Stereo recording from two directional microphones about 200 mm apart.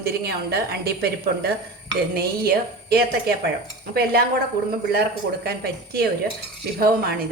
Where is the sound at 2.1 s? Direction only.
50° right (ahead or behind).